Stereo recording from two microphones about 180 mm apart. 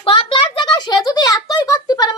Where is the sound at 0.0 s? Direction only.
30° left (ahead or behind).